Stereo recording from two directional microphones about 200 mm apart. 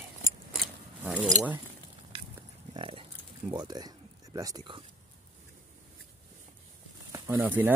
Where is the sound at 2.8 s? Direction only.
25° right (ahead or behind).